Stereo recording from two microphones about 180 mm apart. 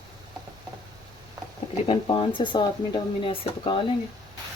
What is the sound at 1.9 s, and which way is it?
Speech, 30° left (ahead or behind).